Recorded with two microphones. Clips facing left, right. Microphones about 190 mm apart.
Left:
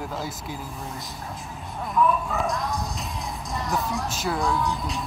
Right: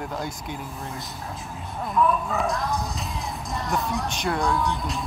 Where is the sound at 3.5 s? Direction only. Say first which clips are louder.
Right 1 dB; centre (ahead or behind).